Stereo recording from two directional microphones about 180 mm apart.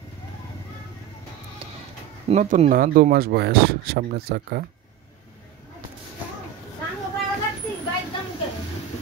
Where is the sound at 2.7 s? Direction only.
55° right (ahead or behind).